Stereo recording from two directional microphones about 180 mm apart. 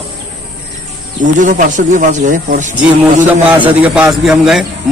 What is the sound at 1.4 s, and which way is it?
Speech, 45° right (ahead or behind).